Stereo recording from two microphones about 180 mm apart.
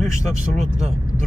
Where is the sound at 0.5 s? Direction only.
40° right (ahead or behind).